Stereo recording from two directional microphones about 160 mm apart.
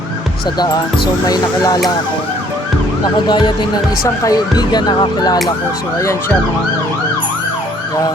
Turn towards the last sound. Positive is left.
turn(degrees=20)  # may be behind; listen again after turning